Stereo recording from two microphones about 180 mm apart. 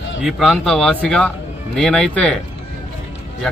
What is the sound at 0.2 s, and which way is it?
A man's voice, centre (ahead or behind).